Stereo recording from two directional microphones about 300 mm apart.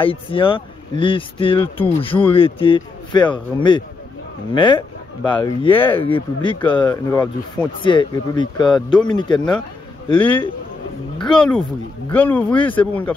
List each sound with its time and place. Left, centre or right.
0.0 s speech: centre
11.2 s speech: centre